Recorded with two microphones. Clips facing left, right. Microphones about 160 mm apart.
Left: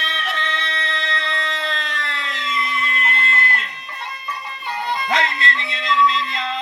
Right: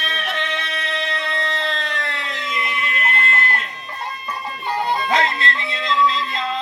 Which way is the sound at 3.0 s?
50° right (ahead or behind).